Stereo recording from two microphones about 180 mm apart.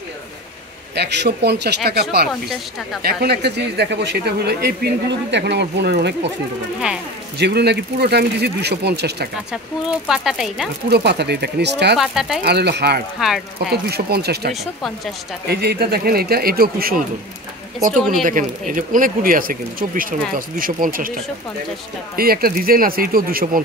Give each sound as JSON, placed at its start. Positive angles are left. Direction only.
{"t": 0.9, "sound": "speech", "side_deg": -70}
{"t": 7.3, "sound": "speech", "side_deg": -65}
{"t": 9.5, "sound": "speech", "side_deg": -5}
{"t": 10.9, "sound": "speech", "side_deg": -65}
{"t": 12.0, "sound": "speech", "side_deg": 0}
{"t": 12.4, "sound": "speech", "side_deg": -65}
{"t": 14.5, "sound": "speech", "side_deg": 0}
{"t": 15.4, "sound": "speech", "side_deg": -60}
{"t": 17.9, "sound": "speech", "side_deg": 0}
{"t": 18.2, "sound": "speech", "side_deg": -50}
{"t": 22.1, "sound": "speech", "side_deg": -55}